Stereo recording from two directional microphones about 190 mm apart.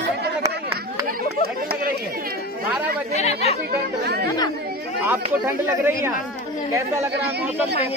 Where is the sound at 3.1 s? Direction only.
35° left (ahead or behind).